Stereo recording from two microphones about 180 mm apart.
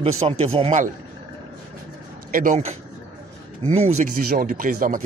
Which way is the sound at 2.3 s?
45° right (ahead or behind).